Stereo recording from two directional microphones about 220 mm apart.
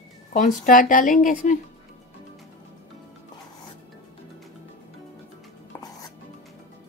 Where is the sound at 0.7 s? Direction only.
35° left (ahead or behind).